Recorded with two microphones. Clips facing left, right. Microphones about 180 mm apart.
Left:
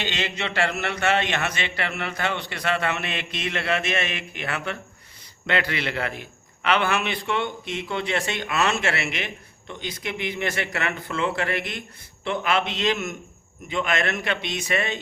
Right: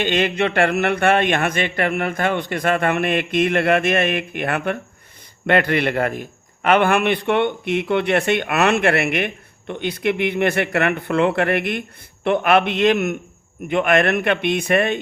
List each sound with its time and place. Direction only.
0.0 s a man's voice: 55° right (ahead or behind)